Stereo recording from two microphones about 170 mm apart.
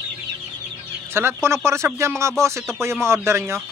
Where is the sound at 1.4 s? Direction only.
15° right (ahead or behind).